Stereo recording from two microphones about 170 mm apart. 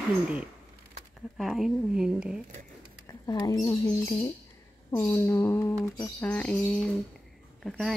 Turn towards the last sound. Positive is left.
turn(degrees=0)  # may be behind; listen again after turning